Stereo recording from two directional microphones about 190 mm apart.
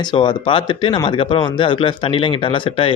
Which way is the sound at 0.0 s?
25° left (ahead or behind).